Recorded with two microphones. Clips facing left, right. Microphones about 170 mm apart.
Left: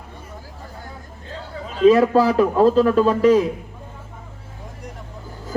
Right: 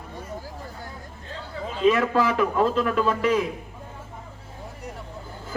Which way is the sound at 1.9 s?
35° left (ahead or behind).